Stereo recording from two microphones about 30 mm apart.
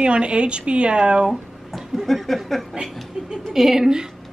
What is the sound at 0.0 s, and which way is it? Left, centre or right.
Speech, right.